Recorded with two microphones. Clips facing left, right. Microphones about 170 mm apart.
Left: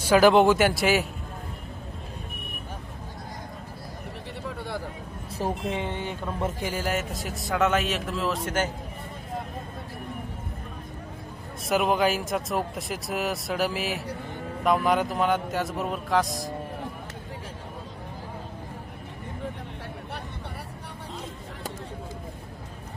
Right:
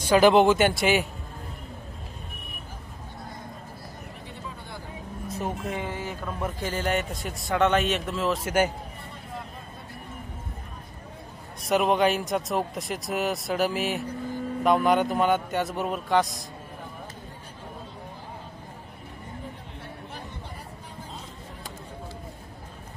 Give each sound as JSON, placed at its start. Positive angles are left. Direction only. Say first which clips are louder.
{"t": 0.0, "sound": "speech", "louder": "even", "side_deg": 5}
{"t": 4.5, "sound": "a sound", "louder": "left 10 dB", "side_deg": 75}
{"t": 5.3, "sound": "speech", "louder": "left 2 dB", "side_deg": 30}
{"t": 6.6, "sound": "speech", "louder": "right 1 dB", "side_deg": 10}
{"t": 11.6, "sound": "speech", "louder": "right 1 dB", "side_deg": 0}